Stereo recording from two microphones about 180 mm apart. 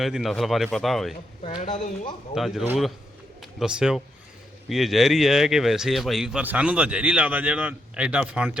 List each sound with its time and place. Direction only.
0.0 s speech: centre (ahead or behind)
1.5 s speech: 40° left (ahead or behind)
2.3 s speech: centre (ahead or behind)